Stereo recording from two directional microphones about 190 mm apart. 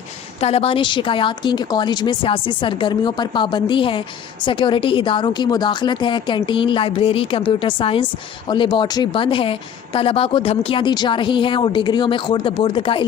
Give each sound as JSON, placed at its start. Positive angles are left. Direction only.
{"t": 0.4, "sound": "a woman's voice", "side_deg": 30}